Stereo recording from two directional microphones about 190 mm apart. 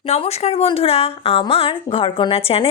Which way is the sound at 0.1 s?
35° left (ahead or behind).